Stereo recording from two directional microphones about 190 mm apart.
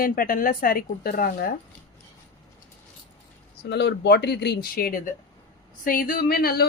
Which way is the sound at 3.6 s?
65° left (ahead or behind).